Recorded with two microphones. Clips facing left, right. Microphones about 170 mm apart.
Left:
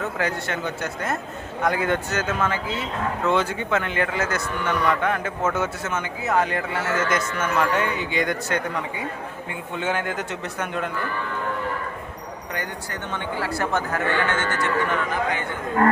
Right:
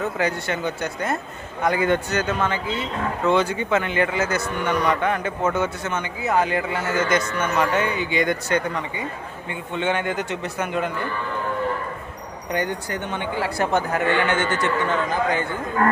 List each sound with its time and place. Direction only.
0.0 s a man's voice: centre (ahead or behind)
12.5 s speech: 20° right (ahead or behind)